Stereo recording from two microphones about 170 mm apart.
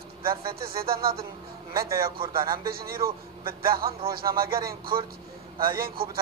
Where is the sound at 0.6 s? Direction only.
60° right (ahead or behind).